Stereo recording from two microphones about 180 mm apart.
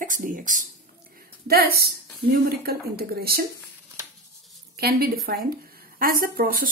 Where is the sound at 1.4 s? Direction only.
60° right (ahead or behind).